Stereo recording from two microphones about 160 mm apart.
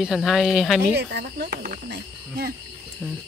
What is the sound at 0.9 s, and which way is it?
Speech, 90° right.